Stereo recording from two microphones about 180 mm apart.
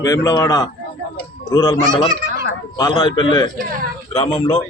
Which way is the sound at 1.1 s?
25° left (ahead or behind).